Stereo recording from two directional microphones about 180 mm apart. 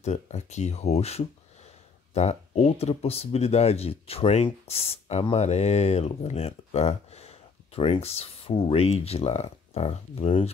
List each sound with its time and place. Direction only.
0.0 s speech: 40° left (ahead or behind)